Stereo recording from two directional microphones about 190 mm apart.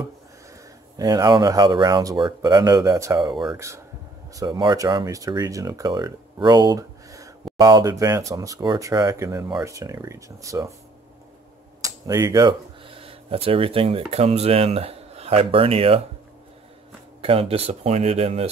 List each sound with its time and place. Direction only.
0.9 s speech: 20° right (ahead or behind)
11.8 s speech: 20° right (ahead or behind)
17.2 s speech: 30° right (ahead or behind)